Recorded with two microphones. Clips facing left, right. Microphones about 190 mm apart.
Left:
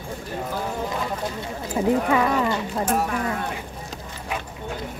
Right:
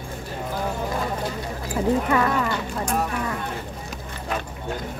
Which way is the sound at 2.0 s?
15° left (ahead or behind).